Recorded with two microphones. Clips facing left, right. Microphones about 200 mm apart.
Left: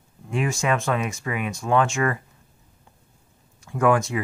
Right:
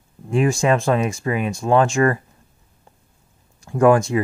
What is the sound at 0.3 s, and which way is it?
Speech, 35° right (ahead or behind).